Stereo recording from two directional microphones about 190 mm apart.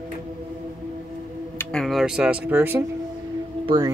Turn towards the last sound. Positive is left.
turn(degrees=-20)  # may be behind; listen again after turning